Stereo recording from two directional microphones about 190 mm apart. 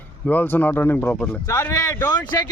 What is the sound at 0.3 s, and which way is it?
A man's voice, 10° left (ahead or behind).